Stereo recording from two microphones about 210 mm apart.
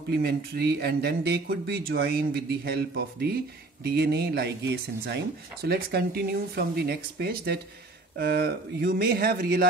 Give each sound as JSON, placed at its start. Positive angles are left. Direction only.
{"t": 0.1, "sound": "speech", "side_deg": -50}